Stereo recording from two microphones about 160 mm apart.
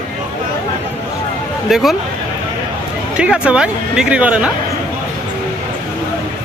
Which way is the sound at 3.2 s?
5° right (ahead or behind).